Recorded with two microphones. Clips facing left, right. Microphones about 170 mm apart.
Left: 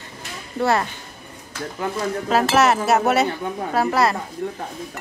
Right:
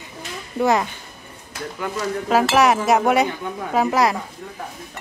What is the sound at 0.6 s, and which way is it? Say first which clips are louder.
Speech: right 1 dB; 15° right (ahead or behind).